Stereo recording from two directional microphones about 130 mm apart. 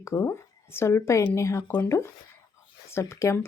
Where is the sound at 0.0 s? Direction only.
20° left (ahead or behind).